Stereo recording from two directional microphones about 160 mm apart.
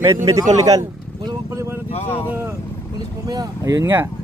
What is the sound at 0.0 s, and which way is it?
Speech, 20° right (ahead or behind).